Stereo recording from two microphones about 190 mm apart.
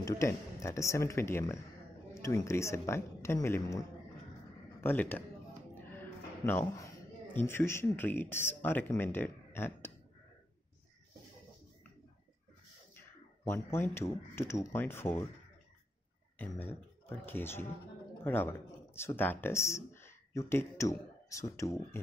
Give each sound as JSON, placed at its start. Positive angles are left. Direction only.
{"t": 0.0, "sound": "speech", "side_deg": 15}
{"t": 4.8, "sound": "speech", "side_deg": 10}
{"t": 5.8, "sound": "music", "side_deg": 10}
{"t": 7.3, "sound": "speech", "side_deg": 10}
{"t": 13.4, "sound": "speech", "side_deg": 10}
{"t": 16.3, "sound": "speech", "side_deg": 10}